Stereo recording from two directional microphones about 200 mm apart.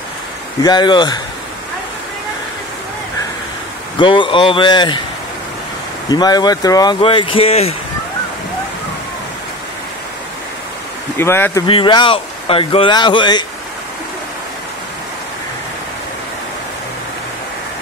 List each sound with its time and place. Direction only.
0.6 s speech: 20° left (ahead or behind)
4.0 s speech: 25° left (ahead or behind)
6.0 s speech: 20° left (ahead or behind)
11.1 s speech: 10° left (ahead or behind)
11.6 s speech: 25° left (ahead or behind)